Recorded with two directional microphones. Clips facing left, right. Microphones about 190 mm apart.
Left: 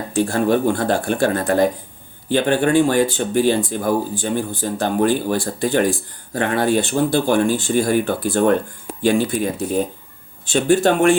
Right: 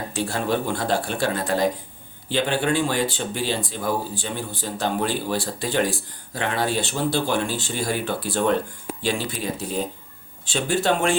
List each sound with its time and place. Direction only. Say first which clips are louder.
0.1 s speech: left 8 dB; 50° left (ahead or behind)